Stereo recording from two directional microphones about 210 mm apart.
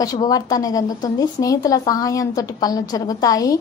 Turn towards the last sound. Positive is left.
turn(degrees=15)  # may be behind; listen again after turning